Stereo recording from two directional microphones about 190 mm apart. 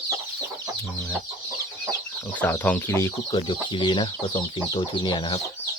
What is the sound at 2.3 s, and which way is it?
Speech, 10° left (ahead or behind).